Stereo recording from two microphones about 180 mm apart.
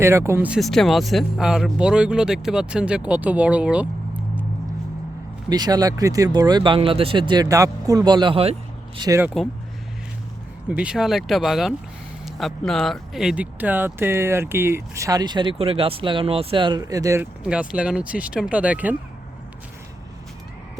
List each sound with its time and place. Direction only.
0.0 s speech: 15° right (ahead or behind)
5.5 s speech: 20° right (ahead or behind)
9.0 s speech: 20° right (ahead or behind)
9.2 s speech: centre (ahead or behind)
10.7 s speech: 5° right (ahead or behind)
17.4 s speech: 5° right (ahead or behind)